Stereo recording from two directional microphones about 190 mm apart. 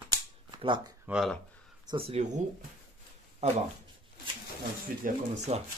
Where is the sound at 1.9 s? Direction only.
30° right (ahead or behind).